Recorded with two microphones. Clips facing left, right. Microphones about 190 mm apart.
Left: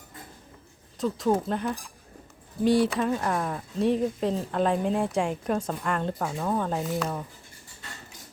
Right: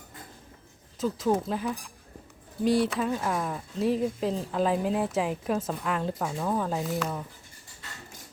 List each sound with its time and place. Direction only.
0.9 s speech: centre (ahead or behind)